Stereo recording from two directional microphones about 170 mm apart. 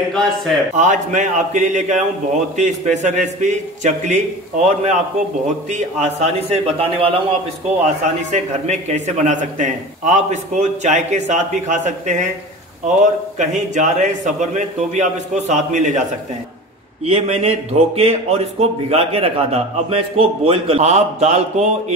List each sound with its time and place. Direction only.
0.1 s speech: centre (ahead or behind)
0.7 s a man's voice: 45° right (ahead or behind)
5.7 s a man's voice: 45° right (ahead or behind)
17.0 s speech: 35° right (ahead or behind)